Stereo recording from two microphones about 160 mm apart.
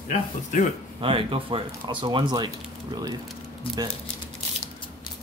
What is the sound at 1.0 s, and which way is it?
Speech, 35° right (ahead or behind).